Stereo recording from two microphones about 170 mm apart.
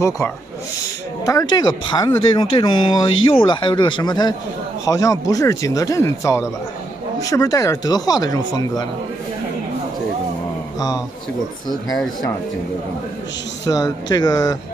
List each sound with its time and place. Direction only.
1.2 s speech: 25° left (ahead or behind)
13.7 s speech: 20° left (ahead or behind)